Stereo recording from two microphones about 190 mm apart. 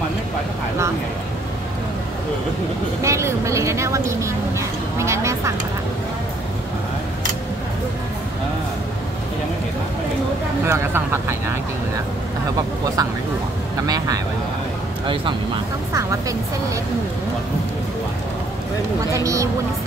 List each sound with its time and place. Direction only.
3.0 s speech: 15° right (ahead or behind)
10.6 s speech: 15° right (ahead or behind)
12.5 s speech: 20° right (ahead or behind)
15.9 s speech: 15° right (ahead or behind)
19.1 s speech: 15° right (ahead or behind)